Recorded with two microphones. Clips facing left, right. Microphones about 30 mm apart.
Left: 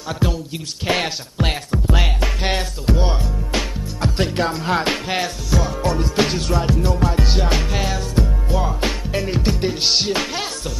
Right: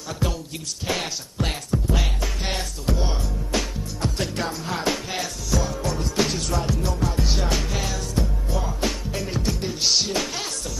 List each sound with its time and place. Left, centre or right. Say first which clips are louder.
0.2 s speech: left 4 dB; left
0.8 s music: left 7 dB; left
2.4 s speech: left 6 dB; left
5.6 s music: left 7 dB; left